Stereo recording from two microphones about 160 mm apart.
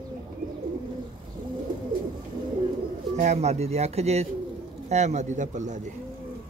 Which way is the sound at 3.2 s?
45° right (ahead or behind).